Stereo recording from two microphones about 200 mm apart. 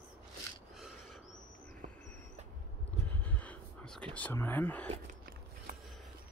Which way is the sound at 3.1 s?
5° left (ahead or behind).